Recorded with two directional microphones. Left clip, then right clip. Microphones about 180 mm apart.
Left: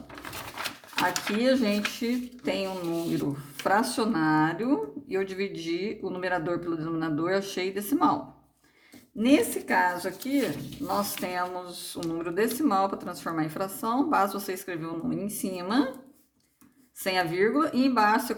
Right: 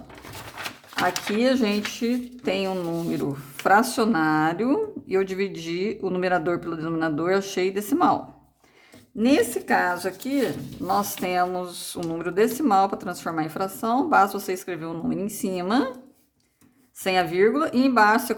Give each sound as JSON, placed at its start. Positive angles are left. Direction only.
{"t": 0.9, "sound": "speech", "side_deg": -35}
{"t": 17.0, "sound": "speech", "side_deg": -30}